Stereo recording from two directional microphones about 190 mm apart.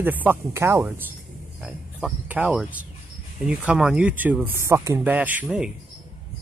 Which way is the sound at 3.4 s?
5° right (ahead or behind).